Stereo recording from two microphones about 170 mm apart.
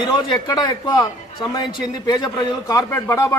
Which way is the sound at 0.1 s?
25° left (ahead or behind).